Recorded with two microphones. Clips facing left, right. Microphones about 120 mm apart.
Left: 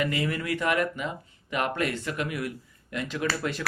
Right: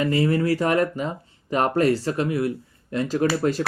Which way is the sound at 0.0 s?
35° right (ahead or behind).